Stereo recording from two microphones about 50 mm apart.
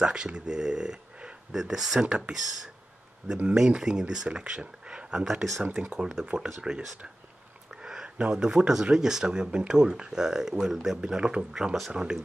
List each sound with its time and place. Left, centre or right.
0.0 s speech: centre
2.0 s speech: centre
3.5 s speech: centre
5.2 s speech: centre
5.6 s speech: centre
7.7 s a sound: centre
8.8 s speech: centre